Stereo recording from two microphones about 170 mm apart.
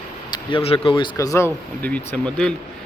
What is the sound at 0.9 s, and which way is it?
Speech, 25° left (ahead or behind).